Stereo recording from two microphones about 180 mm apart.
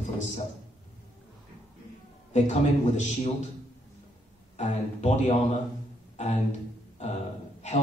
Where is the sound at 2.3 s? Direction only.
40° left (ahead or behind).